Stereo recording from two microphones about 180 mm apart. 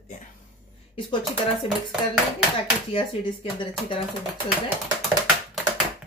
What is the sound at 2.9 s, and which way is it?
Speech, 30° left (ahead or behind).